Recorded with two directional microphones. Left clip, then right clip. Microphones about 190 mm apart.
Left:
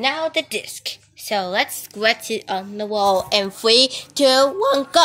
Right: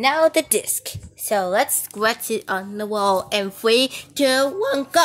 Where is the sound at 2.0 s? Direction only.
15° right (ahead or behind).